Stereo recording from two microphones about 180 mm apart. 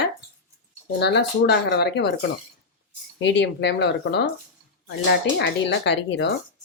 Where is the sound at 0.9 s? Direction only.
70° left (ahead or behind).